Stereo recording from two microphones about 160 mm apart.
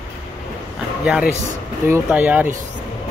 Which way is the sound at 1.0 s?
5° right (ahead or behind).